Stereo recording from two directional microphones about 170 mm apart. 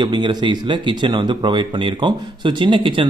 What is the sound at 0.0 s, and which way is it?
Speech, 25° right (ahead or behind).